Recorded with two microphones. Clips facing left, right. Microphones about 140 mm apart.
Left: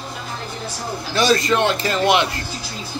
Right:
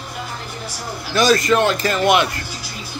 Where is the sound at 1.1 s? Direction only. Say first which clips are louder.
Right 2 dB; 30° left (ahead or behind).